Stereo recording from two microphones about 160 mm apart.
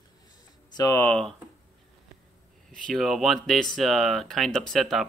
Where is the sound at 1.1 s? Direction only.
5° left (ahead or behind).